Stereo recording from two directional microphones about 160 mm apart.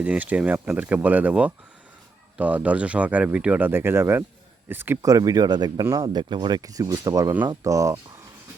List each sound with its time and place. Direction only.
0.0 s speech: 10° right (ahead or behind)